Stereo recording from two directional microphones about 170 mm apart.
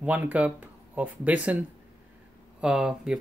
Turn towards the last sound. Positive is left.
turn(degrees=-5)  # may be behind; listen again after turning